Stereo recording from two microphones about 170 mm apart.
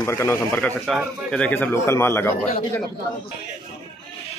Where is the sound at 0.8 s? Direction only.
Centre (ahead or behind).